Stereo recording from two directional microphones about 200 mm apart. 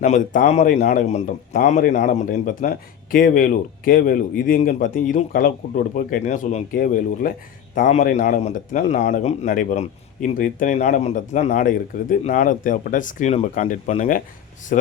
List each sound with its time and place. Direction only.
0.0 s a man's voice: 35° left (ahead or behind)